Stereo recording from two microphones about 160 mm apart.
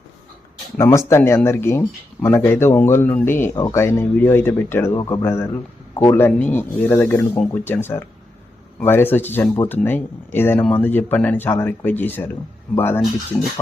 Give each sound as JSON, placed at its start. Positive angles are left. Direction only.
{"t": 0.8, "sound": "speech", "side_deg": 15}